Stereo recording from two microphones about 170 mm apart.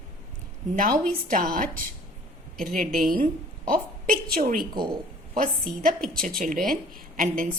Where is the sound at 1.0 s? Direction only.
50° right (ahead or behind).